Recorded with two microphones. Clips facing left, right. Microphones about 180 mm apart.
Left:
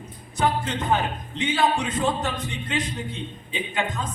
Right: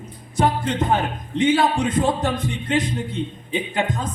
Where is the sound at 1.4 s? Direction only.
50° right (ahead or behind).